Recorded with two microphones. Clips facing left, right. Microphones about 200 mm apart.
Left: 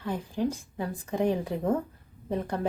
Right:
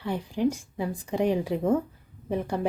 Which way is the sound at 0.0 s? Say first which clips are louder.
Right 3 dB; 15° right (ahead or behind).